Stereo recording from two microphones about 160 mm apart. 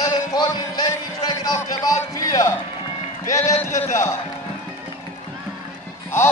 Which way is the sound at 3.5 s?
45° left (ahead or behind).